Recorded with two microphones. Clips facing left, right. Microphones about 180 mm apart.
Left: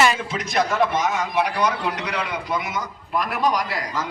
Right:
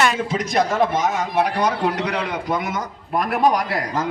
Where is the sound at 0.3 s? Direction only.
40° right (ahead or behind).